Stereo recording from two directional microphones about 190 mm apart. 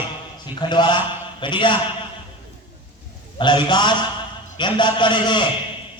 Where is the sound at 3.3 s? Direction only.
25° left (ahead or behind).